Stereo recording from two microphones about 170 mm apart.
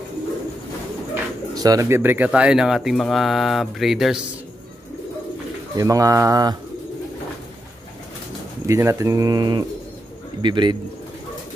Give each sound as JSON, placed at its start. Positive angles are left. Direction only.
{"t": 1.5, "sound": "speech", "side_deg": -20}
{"t": 5.8, "sound": "speech", "side_deg": -20}
{"t": 8.6, "sound": "speech", "side_deg": -15}